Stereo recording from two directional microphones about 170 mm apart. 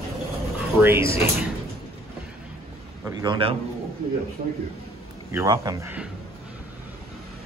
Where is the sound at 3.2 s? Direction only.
30° right (ahead or behind).